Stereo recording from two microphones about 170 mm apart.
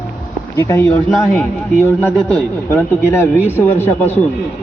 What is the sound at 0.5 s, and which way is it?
Speech, 15° left (ahead or behind).